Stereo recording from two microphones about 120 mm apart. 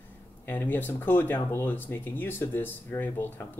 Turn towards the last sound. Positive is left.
turn(degrees=15)  # may be behind; listen again after turning